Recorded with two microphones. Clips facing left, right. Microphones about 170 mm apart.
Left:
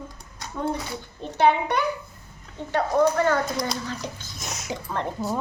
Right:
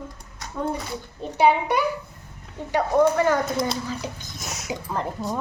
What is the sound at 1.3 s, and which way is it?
A woman's voice, 10° right (ahead or behind).